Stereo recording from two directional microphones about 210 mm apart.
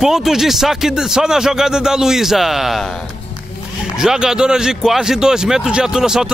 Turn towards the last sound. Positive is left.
turn(degrees=-5)  # may be behind; listen again after turning